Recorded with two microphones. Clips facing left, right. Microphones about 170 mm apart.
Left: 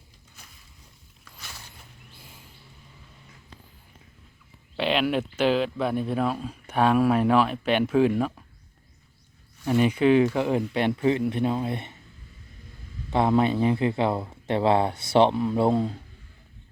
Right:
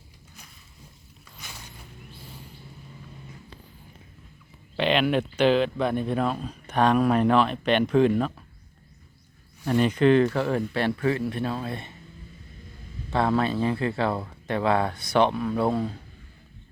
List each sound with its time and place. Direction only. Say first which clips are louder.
1.2 s a sound: right 1 dB; 10° right (ahead or behind)
4.8 s speech: right 1 dB; 5° left (ahead or behind)
9.6 s speech: even; 10° left (ahead or behind)
13.1 s speech: left 2 dB; 20° left (ahead or behind)